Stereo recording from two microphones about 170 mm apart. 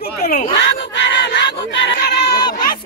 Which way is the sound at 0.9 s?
90° left.